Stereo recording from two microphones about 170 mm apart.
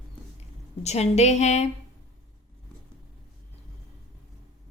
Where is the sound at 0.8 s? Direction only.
40° left (ahead or behind).